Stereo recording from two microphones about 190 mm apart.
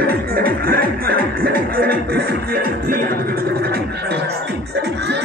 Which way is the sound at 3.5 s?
55° right (ahead or behind).